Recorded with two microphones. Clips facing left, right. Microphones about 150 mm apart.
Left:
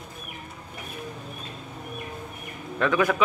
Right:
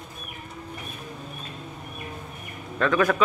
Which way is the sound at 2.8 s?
15° left (ahead or behind).